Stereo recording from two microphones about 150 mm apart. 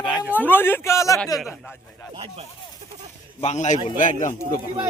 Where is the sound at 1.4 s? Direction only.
5° right (ahead or behind).